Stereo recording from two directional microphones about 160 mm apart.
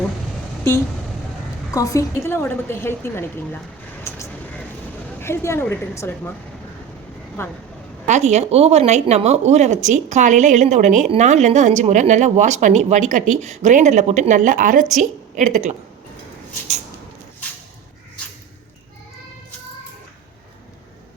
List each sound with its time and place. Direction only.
1.7 s a woman's voice: 20° left (ahead or behind)
4.0 s vehicle: 15° left (ahead or behind)
5.2 s a woman's voice: 15° left (ahead or behind)
7.4 s a woman's voice: 15° left (ahead or behind)
8.0 s speech: 45° right (ahead or behind)